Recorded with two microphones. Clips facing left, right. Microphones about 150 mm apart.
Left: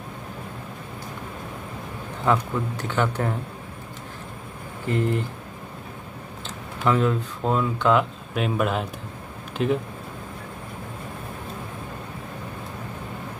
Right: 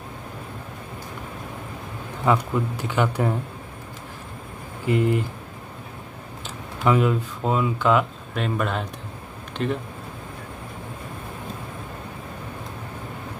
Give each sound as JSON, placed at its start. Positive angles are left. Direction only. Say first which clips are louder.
{"t": 2.2, "sound": "speech", "louder": "right 1 dB", "side_deg": -10}
{"t": 4.8, "sound": "speech", "louder": "right 3 dB", "side_deg": -10}
{"t": 6.8, "sound": "speech", "louder": "right 1 dB", "side_deg": -10}